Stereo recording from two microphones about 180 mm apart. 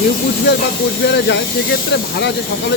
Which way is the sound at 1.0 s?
70° left (ahead or behind).